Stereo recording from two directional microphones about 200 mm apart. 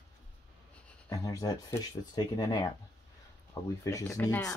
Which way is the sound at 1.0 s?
20° left (ahead or behind).